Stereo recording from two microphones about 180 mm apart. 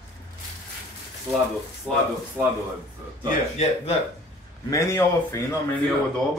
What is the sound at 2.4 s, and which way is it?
Speech, 15° right (ahead or behind).